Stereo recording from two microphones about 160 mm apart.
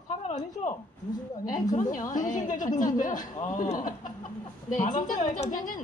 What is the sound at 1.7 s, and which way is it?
Speech, 50° left (ahead or behind).